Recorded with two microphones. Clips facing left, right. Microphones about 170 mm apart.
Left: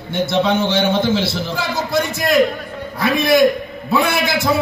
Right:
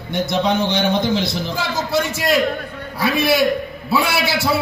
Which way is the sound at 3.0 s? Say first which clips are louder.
Left 3 dB; 10° right (ahead or behind).